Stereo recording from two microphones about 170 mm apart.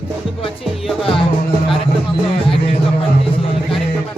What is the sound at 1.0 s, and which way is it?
Music, 30° left (ahead or behind).